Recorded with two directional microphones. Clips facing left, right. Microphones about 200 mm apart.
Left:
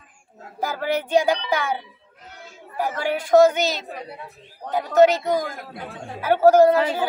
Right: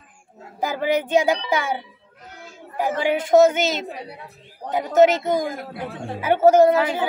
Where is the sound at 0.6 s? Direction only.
15° right (ahead or behind).